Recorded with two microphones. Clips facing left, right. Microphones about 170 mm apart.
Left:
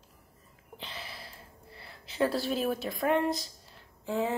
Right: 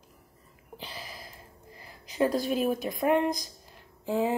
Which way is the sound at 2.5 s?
15° right (ahead or behind).